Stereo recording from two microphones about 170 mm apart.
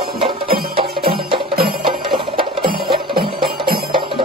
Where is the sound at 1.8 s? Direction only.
30° right (ahead or behind).